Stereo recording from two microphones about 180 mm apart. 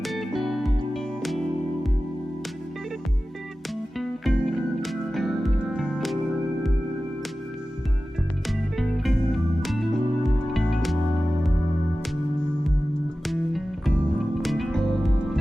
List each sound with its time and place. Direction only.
0.0 s music: centre (ahead or behind)
3.9 s music: centre (ahead or behind)
8.4 s music: centre (ahead or behind)
13.2 s music: centre (ahead or behind)